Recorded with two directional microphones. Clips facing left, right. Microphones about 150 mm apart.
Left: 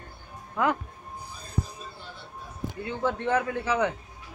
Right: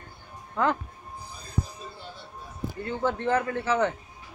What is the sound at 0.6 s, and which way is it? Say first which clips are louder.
Speech: even; 5° left (ahead or behind).